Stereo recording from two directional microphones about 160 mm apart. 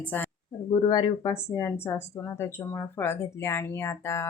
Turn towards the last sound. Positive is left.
turn(degrees=15)  # may be behind; listen again after turning